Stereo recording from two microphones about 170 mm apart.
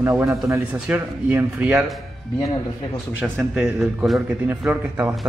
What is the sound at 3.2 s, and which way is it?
Speech, centre (ahead or behind).